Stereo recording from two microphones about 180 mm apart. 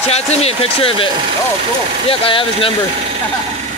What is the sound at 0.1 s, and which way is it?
Speech, 35° left (ahead or behind).